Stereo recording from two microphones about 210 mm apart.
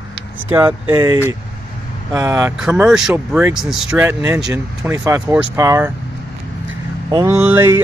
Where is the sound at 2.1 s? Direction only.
15° right (ahead or behind).